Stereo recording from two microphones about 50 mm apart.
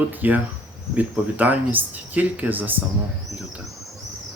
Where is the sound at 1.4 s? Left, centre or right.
Right.